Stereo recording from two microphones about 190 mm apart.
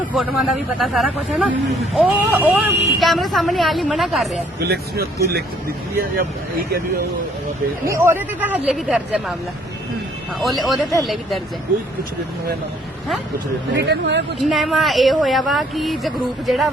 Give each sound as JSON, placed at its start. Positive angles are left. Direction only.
{"t": 0.0, "sound": "speech", "side_deg": 0}
{"t": 4.7, "sound": "speech", "side_deg": -55}
{"t": 7.9, "sound": "speech", "side_deg": -10}
{"t": 10.4, "sound": "speech", "side_deg": 0}
{"t": 13.7, "sound": "speech", "side_deg": -60}
{"t": 14.3, "sound": "speech", "side_deg": 0}